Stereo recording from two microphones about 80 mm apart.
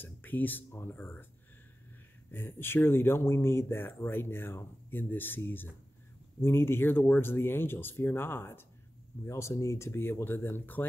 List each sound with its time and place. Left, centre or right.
0.0 s speech: left
2.3 s speech: left